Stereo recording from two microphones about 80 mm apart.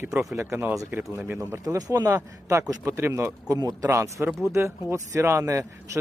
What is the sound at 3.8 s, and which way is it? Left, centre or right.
Speech, right.